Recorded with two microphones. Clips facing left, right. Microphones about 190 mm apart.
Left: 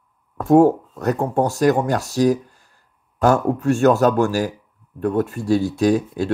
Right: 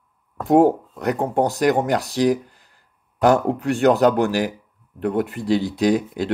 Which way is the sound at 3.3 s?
20° right (ahead or behind).